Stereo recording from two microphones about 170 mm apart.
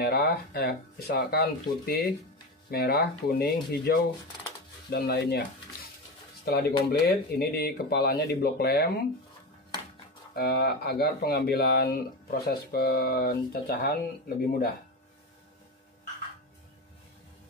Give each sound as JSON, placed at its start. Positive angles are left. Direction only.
{"t": 0.0, "sound": "speech", "side_deg": 65}
{"t": 6.4, "sound": "speech", "side_deg": 65}
{"t": 10.3, "sound": "speech", "side_deg": 65}